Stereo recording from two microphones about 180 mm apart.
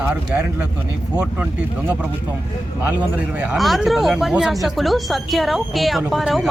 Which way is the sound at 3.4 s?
5° right (ahead or behind).